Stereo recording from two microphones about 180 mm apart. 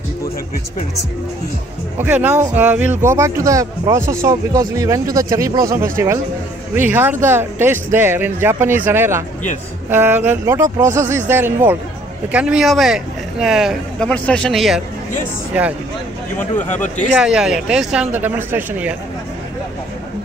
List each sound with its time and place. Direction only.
2.0 s speech: 10° right (ahead or behind)
16.3 s speech: 10° left (ahead or behind)
16.8 s speech: 45° left (ahead or behind)
17.2 s speech: 5° right (ahead or behind)